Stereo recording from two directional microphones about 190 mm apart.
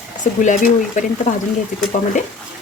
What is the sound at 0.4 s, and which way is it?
Speech, 40° left (ahead or behind).